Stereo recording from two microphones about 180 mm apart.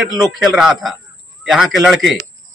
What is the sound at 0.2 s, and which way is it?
A man's voice, centre (ahead or behind).